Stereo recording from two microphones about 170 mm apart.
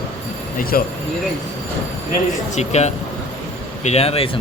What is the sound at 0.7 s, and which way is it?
Speech, 55° left (ahead or behind).